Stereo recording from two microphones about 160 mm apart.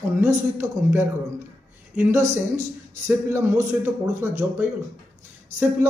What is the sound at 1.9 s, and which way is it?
A man's voice, 15° right (ahead or behind).